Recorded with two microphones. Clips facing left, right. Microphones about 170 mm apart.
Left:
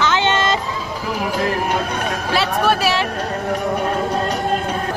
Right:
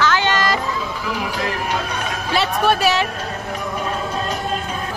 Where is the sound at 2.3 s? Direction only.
Centre (ahead or behind).